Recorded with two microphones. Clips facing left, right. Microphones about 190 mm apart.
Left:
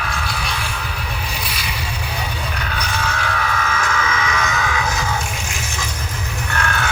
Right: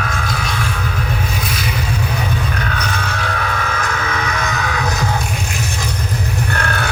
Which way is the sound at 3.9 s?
40° right (ahead or behind).